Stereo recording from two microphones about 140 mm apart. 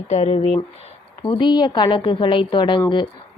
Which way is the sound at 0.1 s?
45° left (ahead or behind).